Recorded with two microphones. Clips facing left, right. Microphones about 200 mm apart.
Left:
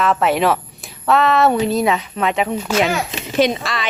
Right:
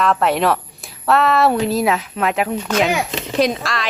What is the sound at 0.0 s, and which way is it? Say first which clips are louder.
A woman's voice: even; centre (ahead or behind).